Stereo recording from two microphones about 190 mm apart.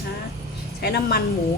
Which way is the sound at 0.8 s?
55° left (ahead or behind).